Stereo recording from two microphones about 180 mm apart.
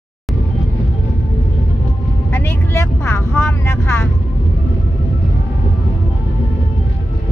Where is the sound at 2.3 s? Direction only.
10° left (ahead or behind).